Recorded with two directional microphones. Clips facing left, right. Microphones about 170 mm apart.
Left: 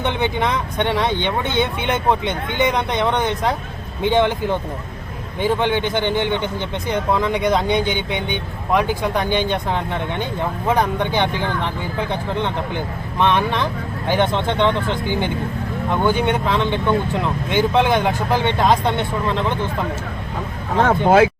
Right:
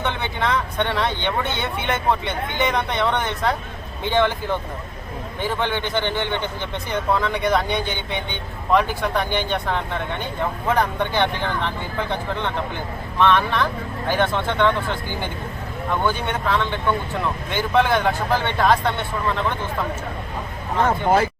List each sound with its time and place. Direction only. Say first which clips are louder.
0.0 s speech: left 4 dB; 20° left (ahead or behind)
20.8 s speech: left 5 dB; 80° left